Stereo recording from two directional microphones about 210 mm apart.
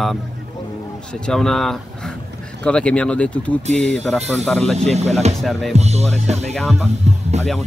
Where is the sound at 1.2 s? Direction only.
Centre (ahead or behind).